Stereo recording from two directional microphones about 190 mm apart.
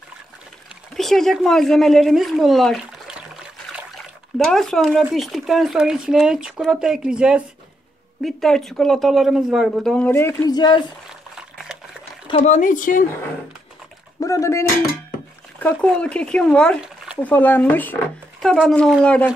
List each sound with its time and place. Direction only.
0.9 s speech: centre (ahead or behind); by 10.8 s 20° left (ahead or behind)
11.5 s liquid: centre (ahead or behind)
12.3 s speech: 35° left (ahead or behind)
14.2 s speech: 15° left (ahead or behind)
15.7 s speech: 5° left (ahead or behind)